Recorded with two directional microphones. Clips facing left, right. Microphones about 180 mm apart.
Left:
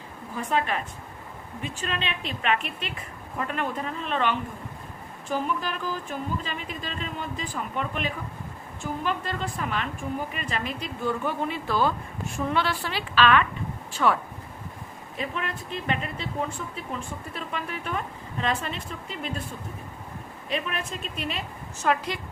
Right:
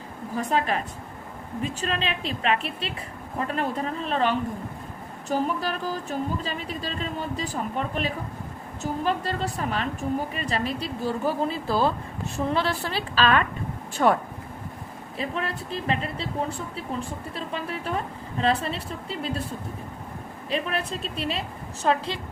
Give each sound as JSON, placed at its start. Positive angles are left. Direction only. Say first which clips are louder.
{"t": 0.3, "sound": "a woman's voice", "louder": "right 2 dB", "side_deg": -35}
{"t": 15.2, "sound": "a woman's voice", "louder": "right 2 dB", "side_deg": -35}
{"t": 20.5, "sound": "a woman's voice", "louder": "right 3 dB", "side_deg": -35}